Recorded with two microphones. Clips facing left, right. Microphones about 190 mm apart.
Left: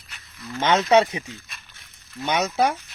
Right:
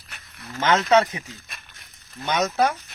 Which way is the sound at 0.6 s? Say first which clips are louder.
Left 1 dB; 15° left (ahead or behind).